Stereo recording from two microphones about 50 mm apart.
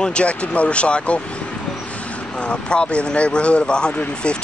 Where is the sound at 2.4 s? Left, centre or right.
Left.